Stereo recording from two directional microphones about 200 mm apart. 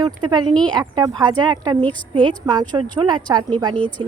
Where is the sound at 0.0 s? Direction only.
20° right (ahead or behind).